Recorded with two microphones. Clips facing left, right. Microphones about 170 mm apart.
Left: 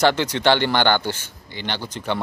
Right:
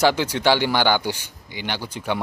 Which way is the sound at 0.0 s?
10° right (ahead or behind).